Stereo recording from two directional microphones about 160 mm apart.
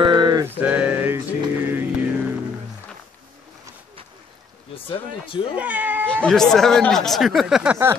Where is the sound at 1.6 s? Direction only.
15° right (ahead or behind).